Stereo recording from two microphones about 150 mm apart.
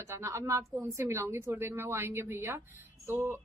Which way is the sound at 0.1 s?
20° right (ahead or behind).